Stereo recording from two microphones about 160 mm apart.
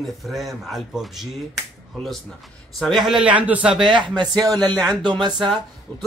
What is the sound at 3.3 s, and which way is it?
Speech, 10° right (ahead or behind).